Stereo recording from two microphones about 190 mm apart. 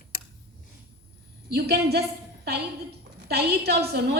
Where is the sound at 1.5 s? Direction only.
55° right (ahead or behind).